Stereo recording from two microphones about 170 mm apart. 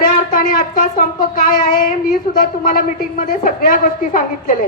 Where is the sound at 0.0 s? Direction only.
55° left (ahead or behind).